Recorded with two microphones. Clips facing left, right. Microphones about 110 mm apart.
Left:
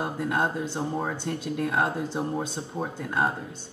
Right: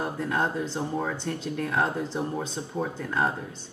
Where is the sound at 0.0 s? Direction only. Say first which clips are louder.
Left 1 dB; 15° left (ahead or behind).